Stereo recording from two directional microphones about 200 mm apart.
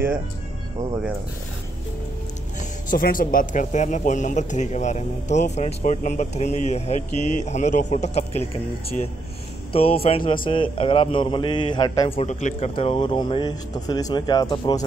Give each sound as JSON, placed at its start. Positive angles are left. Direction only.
{"t": 2.9, "sound": "speech", "side_deg": 45}
{"t": 9.7, "sound": "speech", "side_deg": 30}
{"t": 12.2, "sound": "speech", "side_deg": 35}